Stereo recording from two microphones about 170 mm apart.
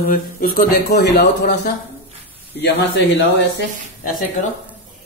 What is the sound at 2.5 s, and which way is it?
Speech, 90° left.